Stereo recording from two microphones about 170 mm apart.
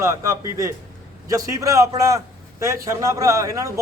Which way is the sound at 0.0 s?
15° right (ahead or behind).